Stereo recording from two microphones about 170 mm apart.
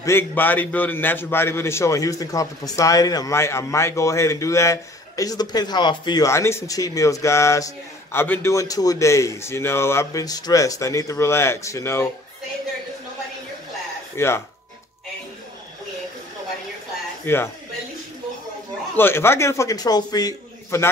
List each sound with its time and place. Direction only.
0.0 s a man's voice: 15° left (ahead or behind)
14.1 s a man's voice: 15° left (ahead or behind)
17.3 s a man's voice: 15° left (ahead or behind)
18.9 s a man's voice: 15° left (ahead or behind)